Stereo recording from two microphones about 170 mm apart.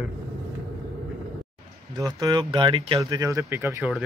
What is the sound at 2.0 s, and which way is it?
Speech, 20° right (ahead or behind).